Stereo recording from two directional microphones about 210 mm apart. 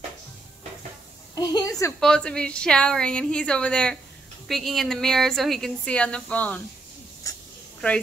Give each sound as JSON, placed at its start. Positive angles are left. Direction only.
{"t": 1.3, "sound": "a woman's voice", "side_deg": 20}
{"t": 2.0, "sound": "a woman's voice", "side_deg": 5}